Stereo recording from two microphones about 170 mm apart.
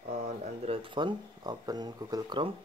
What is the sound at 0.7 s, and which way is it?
Speech, 30° right (ahead or behind).